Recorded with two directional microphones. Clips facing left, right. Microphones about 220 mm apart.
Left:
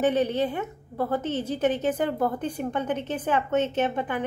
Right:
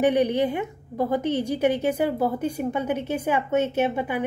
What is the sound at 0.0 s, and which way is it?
A woman's voice, 15° right (ahead or behind).